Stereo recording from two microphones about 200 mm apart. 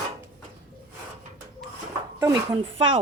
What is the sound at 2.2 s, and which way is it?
Speech, 20° right (ahead or behind).